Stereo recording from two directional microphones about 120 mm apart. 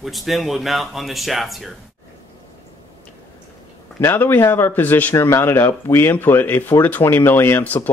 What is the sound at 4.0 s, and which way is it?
Speech, 15° left (ahead or behind).